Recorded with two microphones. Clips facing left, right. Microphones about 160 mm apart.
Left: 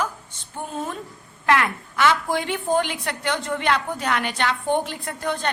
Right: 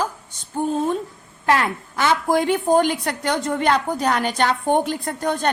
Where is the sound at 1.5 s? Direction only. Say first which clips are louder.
Even; 40° right (ahead or behind).